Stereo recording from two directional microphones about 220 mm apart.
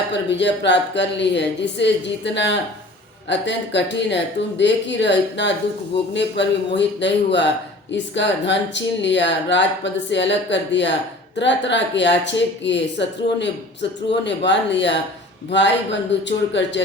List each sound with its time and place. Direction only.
0.1 s speech: 50° left (ahead or behind)